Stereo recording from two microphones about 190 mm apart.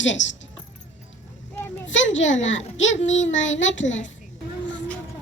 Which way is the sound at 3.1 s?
75° left (ahead or behind).